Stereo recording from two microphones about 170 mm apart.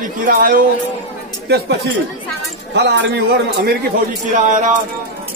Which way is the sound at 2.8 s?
90° right.